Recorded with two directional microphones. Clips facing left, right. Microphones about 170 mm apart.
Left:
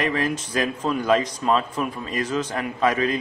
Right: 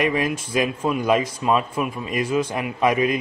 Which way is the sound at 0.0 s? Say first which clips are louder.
Right 2 dB; 10° right (ahead or behind).